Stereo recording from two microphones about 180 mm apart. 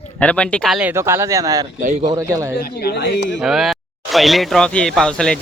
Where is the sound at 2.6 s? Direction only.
60° left (ahead or behind); by 3.3 s 75° left (ahead or behind).